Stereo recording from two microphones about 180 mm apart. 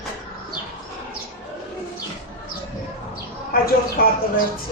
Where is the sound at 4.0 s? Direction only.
55° left (ahead or behind).